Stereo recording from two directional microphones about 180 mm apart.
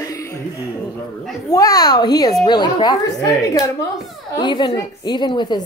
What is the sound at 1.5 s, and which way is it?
A woman's voice, 20° left (ahead or behind).